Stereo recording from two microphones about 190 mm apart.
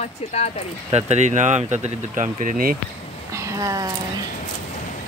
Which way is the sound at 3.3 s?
15° right (ahead or behind).